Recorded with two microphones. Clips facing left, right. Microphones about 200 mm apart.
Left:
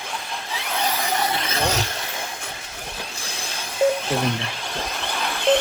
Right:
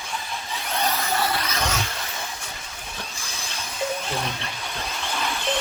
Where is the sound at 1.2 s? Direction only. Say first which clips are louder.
Left 1 dB; 25° left (ahead or behind).